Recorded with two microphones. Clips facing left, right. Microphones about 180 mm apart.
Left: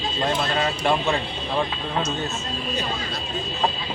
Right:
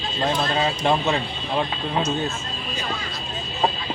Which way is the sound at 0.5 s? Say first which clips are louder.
Right 1 dB; 20° right (ahead or behind).